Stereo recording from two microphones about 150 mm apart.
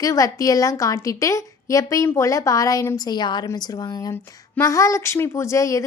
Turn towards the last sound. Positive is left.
turn(degrees=20)  # may be behind; listen again after turning